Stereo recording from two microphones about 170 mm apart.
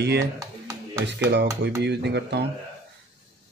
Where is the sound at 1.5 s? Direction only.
15° right (ahead or behind).